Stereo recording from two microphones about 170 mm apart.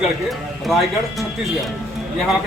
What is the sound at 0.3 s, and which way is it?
Speech, centre (ahead or behind).